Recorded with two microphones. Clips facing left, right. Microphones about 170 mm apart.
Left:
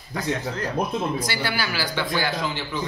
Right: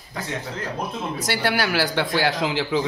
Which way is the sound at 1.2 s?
65° right (ahead or behind).